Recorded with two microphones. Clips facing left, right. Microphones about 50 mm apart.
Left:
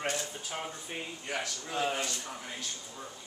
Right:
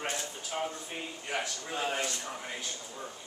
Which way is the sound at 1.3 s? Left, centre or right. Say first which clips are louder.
Even; centre.